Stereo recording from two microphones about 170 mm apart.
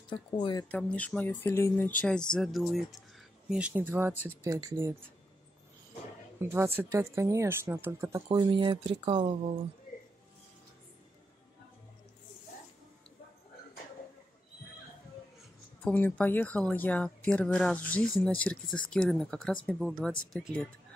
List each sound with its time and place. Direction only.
0.1 s speech: 30° left (ahead or behind)
0.7 s speech: 10° left (ahead or behind); by 4.1 s 10° right (ahead or behind)
4.1 s speech: 10° left (ahead or behind)
4.4 s speech: 20° right (ahead or behind)
6.4 s a woman's voice: 15° right (ahead or behind); by 9.3 s 30° right (ahead or behind)
15.8 s speech: 10° left (ahead or behind)